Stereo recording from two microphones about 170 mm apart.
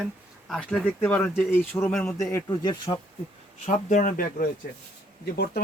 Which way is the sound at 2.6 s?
25° left (ahead or behind).